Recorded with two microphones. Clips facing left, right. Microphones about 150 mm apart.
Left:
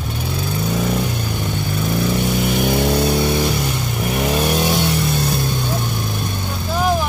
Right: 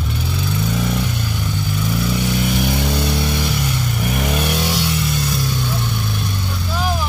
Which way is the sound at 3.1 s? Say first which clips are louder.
Left 3 dB; 30° left (ahead or behind).